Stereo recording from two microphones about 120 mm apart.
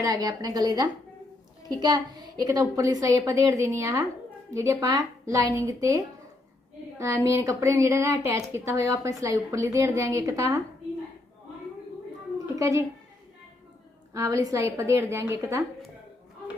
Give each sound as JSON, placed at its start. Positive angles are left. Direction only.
{"t": 0.0, "sound": "a woman's voice", "side_deg": -30}
{"t": 7.0, "sound": "a woman's voice", "side_deg": -25}
{"t": 12.5, "sound": "speech", "side_deg": -25}
{"t": 14.1, "sound": "a woman's voice", "side_deg": -25}